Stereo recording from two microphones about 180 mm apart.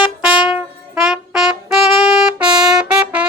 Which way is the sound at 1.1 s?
Centre (ahead or behind).